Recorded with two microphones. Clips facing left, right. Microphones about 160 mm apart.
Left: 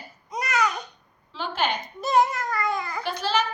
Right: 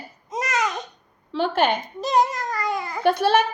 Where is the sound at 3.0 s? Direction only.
55° right (ahead or behind).